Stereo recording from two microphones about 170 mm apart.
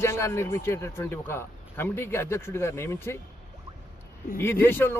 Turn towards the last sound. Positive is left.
turn(degrees=10)  # may be behind; listen again after turning